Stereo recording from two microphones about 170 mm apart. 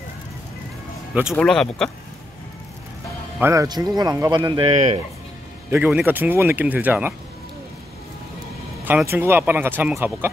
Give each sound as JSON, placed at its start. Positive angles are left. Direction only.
{"t": 1.3, "sound": "speech", "side_deg": 5}
{"t": 3.3, "sound": "speech", "side_deg": -15}
{"t": 5.7, "sound": "speech", "side_deg": -10}
{"t": 8.8, "sound": "speech", "side_deg": -10}